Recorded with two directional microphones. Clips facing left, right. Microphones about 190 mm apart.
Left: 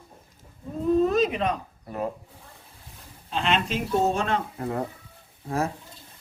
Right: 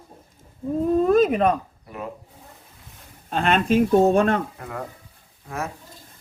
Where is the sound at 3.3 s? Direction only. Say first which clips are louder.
Right 6 dB; 50° right (ahead or behind).